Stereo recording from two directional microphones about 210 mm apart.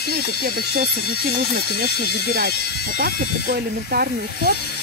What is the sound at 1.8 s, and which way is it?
Speech, 45° right (ahead or behind).